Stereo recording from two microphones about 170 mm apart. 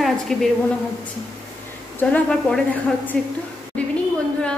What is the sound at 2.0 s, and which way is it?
A woman's voice, 5° left (ahead or behind).